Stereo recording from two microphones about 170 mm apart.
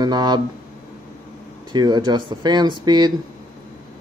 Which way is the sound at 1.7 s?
25° right (ahead or behind).